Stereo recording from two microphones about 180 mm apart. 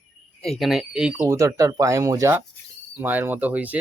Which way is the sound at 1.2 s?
15° right (ahead or behind).